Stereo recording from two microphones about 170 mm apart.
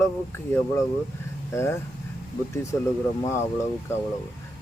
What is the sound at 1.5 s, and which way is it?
Speech, 15° left (ahead or behind).